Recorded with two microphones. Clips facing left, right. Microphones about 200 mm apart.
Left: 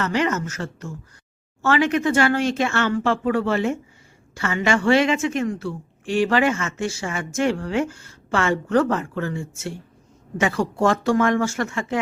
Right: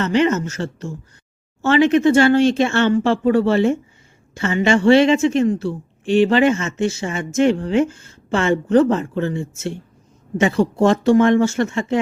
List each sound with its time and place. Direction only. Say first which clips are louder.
0.0 s a woman's voice: right 5 dB; 25° right (ahead or behind)